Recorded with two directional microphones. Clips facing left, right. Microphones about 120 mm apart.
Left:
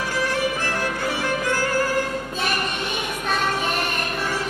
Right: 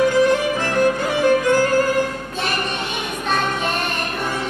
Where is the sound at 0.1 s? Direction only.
20° right (ahead or behind).